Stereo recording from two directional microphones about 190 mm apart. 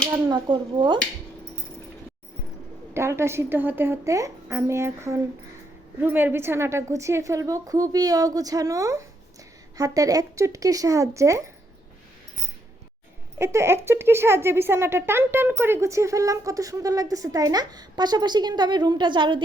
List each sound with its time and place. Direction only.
0.3 s speech: 25° right (ahead or behind)
2.9 s speech: 15° right (ahead or behind)
13.4 s speech: 15° right (ahead or behind)